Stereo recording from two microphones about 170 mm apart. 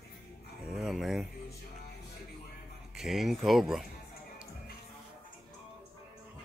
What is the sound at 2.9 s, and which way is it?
Speech, centre (ahead or behind).